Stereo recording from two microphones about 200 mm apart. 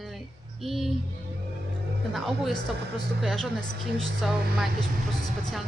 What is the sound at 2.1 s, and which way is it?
A man's voice, centre (ahead or behind).